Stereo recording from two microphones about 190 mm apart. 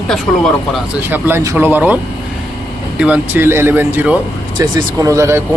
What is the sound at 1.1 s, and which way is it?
Speech, 10° right (ahead or behind).